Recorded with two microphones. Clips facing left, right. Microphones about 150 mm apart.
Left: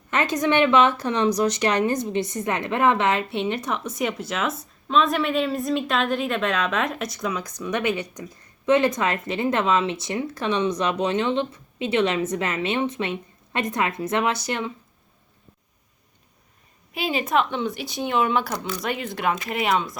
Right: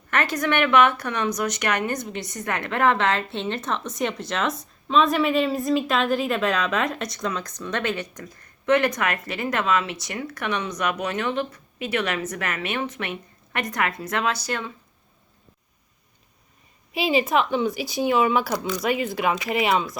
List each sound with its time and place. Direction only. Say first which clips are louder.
0.1 s a woman's voice: left 2 dB; 20° left (ahead or behind)
16.9 s speech: right 2 dB; 5° right (ahead or behind)